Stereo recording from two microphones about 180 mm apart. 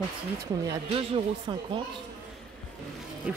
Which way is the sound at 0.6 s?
30° right (ahead or behind).